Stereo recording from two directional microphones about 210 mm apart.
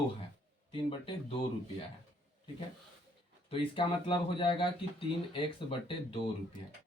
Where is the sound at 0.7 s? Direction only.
25° left (ahead or behind).